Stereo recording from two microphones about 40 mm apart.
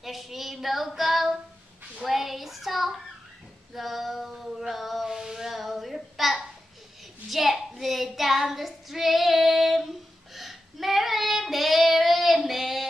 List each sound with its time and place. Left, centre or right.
0.0 s child singing: centre
3.7 s female singing: centre
7.2 s child singing: centre